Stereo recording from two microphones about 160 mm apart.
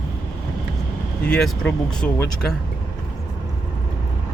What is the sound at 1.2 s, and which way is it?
Speech, 5° left (ahead or behind).